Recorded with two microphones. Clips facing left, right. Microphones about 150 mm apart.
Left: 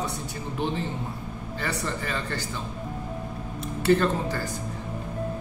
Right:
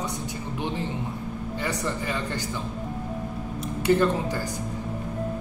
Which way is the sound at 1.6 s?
15° right (ahead or behind).